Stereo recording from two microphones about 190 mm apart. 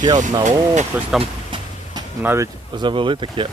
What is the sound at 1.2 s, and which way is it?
Vehicle, 25° right (ahead or behind).